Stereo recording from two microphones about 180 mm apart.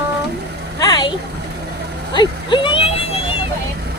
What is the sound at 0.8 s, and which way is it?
Child singing, 20° left (ahead or behind).